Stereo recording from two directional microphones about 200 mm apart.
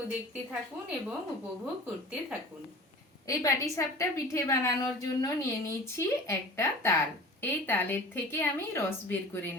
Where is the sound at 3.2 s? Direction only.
15° left (ahead or behind).